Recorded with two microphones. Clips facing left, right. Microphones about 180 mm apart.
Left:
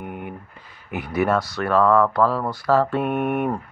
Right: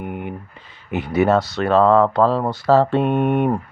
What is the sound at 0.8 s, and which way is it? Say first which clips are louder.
Mantra: right 4 dB; 25° right (ahead or behind).